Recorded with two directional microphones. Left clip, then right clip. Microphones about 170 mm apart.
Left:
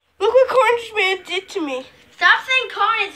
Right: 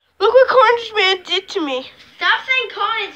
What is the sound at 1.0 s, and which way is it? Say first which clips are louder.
Speech: right 4 dB; 30° right (ahead or behind).